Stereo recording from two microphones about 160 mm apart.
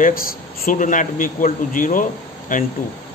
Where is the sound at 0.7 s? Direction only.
55° left (ahead or behind).